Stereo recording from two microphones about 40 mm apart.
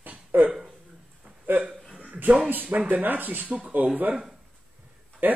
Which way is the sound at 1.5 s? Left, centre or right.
Right.